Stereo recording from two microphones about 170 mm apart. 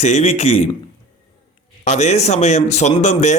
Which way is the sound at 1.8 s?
40° left (ahead or behind).